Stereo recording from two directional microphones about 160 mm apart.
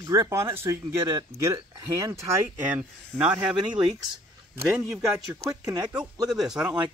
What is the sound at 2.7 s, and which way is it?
Speech, 10° right (ahead or behind).